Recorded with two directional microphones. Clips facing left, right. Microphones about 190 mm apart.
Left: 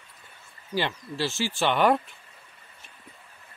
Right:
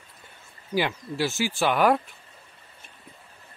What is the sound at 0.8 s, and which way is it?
A man's voice, 10° right (ahead or behind).